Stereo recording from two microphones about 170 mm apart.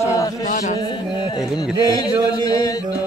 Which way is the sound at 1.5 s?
25° left (ahead or behind).